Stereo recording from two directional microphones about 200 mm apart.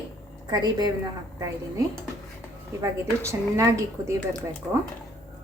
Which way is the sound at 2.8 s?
15° right (ahead or behind).